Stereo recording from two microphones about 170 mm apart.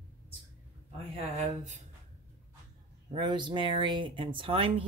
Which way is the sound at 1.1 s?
40° right (ahead or behind).